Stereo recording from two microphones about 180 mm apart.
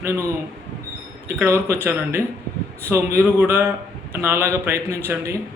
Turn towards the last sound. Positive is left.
turn(degrees=-15)  # may be behind; listen again after turning